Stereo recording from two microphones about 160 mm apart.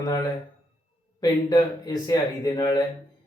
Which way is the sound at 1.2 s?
25° left (ahead or behind).